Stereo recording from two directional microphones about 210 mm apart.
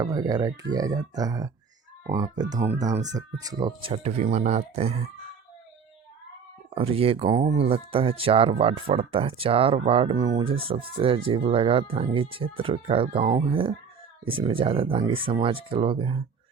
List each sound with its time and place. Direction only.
0.0 s speech: 15° right (ahead or behind)
6.7 s speech: 25° right (ahead or behind)